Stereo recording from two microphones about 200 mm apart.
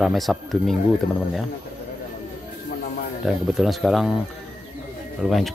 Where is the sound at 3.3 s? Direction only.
Centre (ahead or behind).